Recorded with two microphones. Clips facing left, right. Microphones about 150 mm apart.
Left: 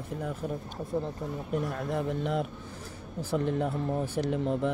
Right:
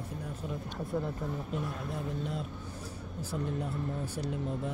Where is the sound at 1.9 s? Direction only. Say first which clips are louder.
Left 9 dB; 70° left (ahead or behind).